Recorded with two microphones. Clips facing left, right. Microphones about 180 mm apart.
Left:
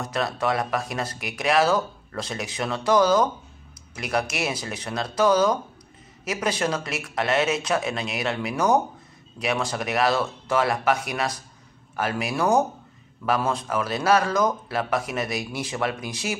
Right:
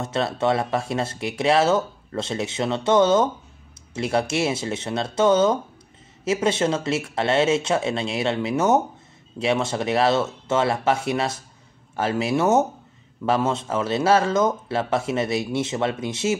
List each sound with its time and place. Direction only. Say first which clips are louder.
0.0 s speech: right 3 dB; 25° right (ahead or behind)